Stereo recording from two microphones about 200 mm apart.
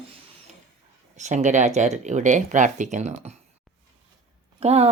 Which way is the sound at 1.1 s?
35° right (ahead or behind).